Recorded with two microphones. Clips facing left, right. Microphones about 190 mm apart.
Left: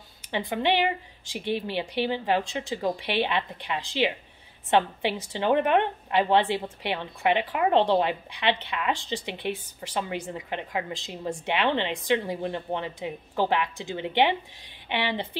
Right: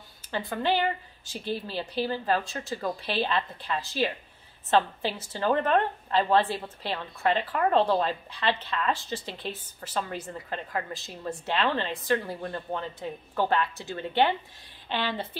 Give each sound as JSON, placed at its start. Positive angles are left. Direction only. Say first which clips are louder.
{"t": 0.3, "sound": "a woman's voice", "louder": "left 2 dB", "side_deg": 15}